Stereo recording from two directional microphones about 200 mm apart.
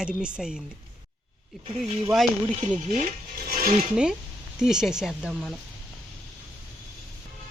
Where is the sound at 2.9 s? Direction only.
40° right (ahead or behind).